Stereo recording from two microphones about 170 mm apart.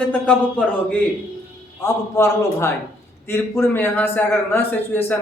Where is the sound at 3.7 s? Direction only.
10° left (ahead or behind).